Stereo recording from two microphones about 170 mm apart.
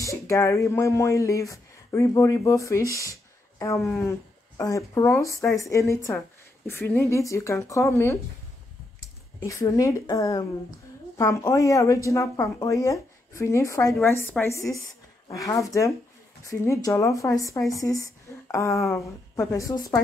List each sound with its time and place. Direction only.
0.0 s speech: 20° left (ahead or behind)
9.4 s a woman's voice: 20° left (ahead or behind)